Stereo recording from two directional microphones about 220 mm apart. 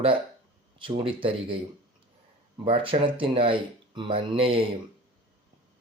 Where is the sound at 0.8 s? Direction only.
25° right (ahead or behind).